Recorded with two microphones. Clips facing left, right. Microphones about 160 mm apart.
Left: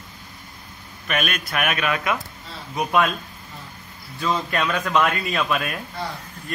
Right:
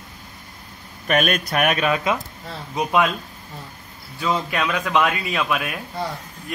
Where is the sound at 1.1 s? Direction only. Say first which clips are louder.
Right 6 dB; 40° right (ahead or behind).